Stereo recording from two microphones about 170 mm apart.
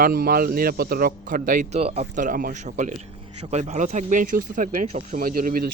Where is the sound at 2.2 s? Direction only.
55° right (ahead or behind).